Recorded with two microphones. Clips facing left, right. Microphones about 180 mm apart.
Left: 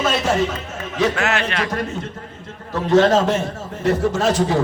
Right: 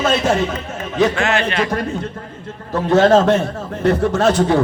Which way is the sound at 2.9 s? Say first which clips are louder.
Right 3 dB; 55° right (ahead or behind).